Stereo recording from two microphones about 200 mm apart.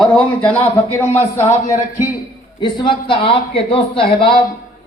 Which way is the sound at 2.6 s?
25° left (ahead or behind).